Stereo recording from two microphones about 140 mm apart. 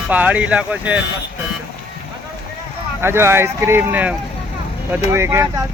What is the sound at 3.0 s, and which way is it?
Speech, 15° right (ahead or behind).